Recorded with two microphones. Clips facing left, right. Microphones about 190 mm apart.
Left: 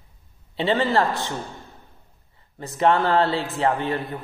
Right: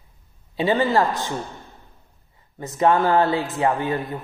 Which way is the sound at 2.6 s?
20° right (ahead or behind).